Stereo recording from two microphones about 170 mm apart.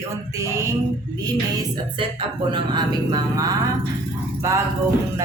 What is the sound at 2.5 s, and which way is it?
Speech, 25° right (ahead or behind).